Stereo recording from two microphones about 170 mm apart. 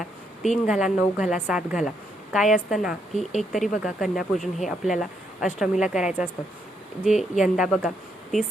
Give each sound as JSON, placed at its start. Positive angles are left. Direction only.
{"t": 0.0, "sound": "a woman's voice", "side_deg": 0}
{"t": 7.1, "sound": "speech", "side_deg": 45}
{"t": 7.4, "sound": "speech", "side_deg": -5}